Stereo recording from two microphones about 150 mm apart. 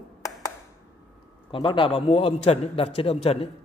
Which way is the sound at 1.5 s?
35° left (ahead or behind).